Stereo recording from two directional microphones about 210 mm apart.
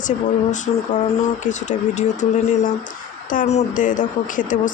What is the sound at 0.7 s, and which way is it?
Speech, 30° left (ahead or behind).